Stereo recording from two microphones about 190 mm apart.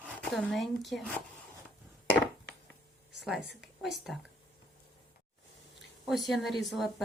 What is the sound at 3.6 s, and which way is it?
Speech, centre (ahead or behind).